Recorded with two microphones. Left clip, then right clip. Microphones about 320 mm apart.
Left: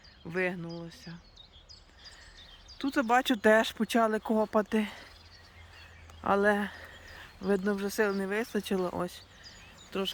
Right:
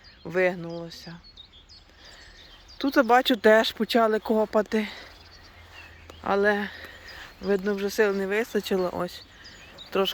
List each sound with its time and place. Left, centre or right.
0.3 s speech: centre
2.7 s speech: centre
6.2 s speech: centre
9.5 s a sound: centre